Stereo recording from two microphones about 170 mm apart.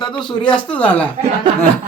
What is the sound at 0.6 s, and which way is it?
Speech, 10° left (ahead or behind).